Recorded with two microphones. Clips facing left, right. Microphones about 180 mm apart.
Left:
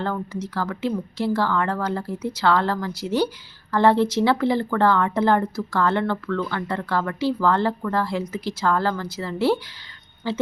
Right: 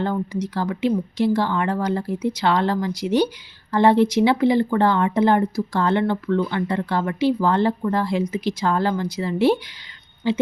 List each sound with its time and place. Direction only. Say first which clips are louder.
0.0 s speech: right 3 dB; 15° right (ahead or behind)